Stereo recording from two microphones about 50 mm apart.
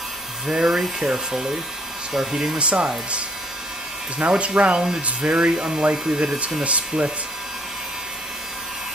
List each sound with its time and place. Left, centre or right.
0.5 s speech: centre
2.6 s speech: right
4.2 s speech: right